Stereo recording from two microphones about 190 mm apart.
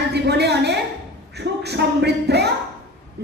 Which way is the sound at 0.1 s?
60° right (ahead or behind).